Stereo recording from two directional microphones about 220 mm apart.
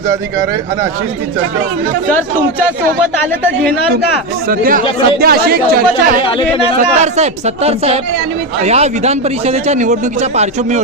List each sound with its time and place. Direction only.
4.4 s a man's voice: 40° right (ahead or behind)
6.7 s a man's voice: 30° right (ahead or behind)